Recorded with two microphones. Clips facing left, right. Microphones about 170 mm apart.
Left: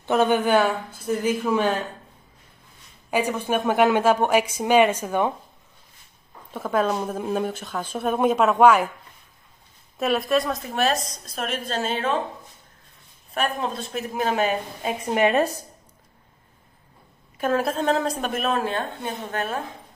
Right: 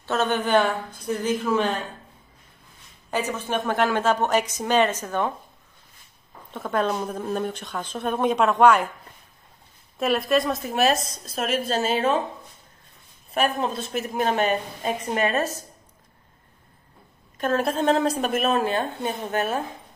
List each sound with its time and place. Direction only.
0.0 s a woman's voice: 15° left (ahead or behind)
3.1 s a woman's voice: 10° left (ahead or behind)
6.5 s speech: 5° left (ahead or behind)
9.9 s speech: centre (ahead or behind)
13.3 s speech: 5° right (ahead or behind); by 15.6 s 15° left (ahead or behind)
17.4 s speech: 10° left (ahead or behind)